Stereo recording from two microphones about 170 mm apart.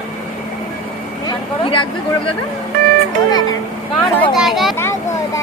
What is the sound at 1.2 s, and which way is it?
Speech, 30° left (ahead or behind).